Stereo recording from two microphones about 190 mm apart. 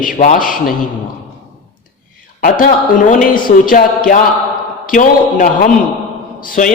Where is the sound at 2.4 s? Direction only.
45° left (ahead or behind).